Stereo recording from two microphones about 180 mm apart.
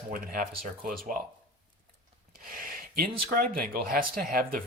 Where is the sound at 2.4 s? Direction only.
50° right (ahead or behind).